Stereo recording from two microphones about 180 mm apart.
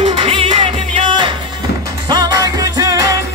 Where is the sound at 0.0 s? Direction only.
30° right (ahead or behind).